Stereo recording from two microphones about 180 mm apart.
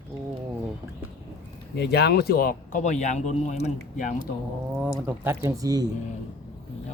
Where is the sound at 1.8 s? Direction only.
65° left (ahead or behind); by 3.7 s 40° left (ahead or behind).